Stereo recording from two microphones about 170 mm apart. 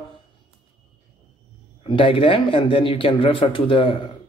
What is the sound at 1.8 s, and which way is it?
Speech, 30° left (ahead or behind).